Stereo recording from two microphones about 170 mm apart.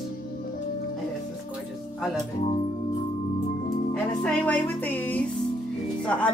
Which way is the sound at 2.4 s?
35° left (ahead or behind).